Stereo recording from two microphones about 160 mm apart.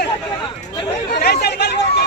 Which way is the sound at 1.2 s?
85° left.